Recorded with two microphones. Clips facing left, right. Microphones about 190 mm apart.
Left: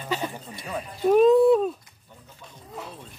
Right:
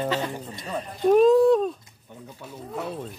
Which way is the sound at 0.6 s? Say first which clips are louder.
Left 1 dB; 5° left (ahead or behind).